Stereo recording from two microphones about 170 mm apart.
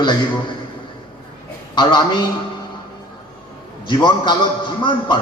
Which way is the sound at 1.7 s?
25° left (ahead or behind).